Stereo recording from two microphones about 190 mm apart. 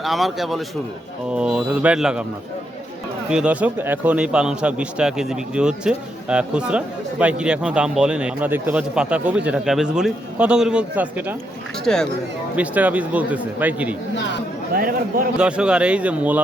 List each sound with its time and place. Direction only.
0.0 s a man's voice: centre (ahead or behind)
3.2 s a man's voice: 5° right (ahead or behind)
12.5 s speech: 10° right (ahead or behind)
14.7 s speech: 50° right (ahead or behind)
15.4 s a man's voice: 5° right (ahead or behind)